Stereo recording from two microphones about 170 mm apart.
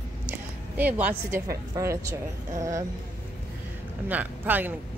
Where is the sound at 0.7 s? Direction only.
10° right (ahead or behind).